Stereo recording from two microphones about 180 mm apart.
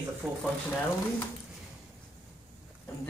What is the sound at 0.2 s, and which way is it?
Speech, centre (ahead or behind).